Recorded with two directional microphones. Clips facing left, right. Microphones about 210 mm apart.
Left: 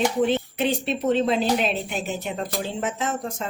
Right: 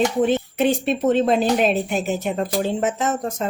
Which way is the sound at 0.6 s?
50° right (ahead or behind).